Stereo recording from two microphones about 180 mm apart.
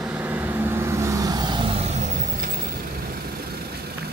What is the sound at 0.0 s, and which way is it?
Vehicle, 10° right (ahead or behind).